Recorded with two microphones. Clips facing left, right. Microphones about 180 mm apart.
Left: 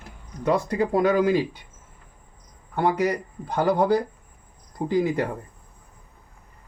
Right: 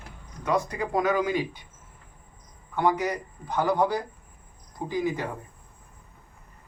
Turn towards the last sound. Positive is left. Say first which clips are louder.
# left 5 dB
turn(degrees=65)  # may be behind; listen again after turning